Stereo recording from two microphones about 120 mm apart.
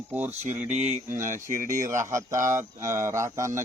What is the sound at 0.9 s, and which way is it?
Speech, 90° right.